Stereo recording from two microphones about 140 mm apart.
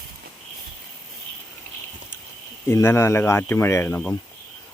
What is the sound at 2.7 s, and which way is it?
Speech, 20° left (ahead or behind).